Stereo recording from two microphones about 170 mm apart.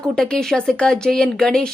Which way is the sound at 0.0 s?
5° left (ahead or behind).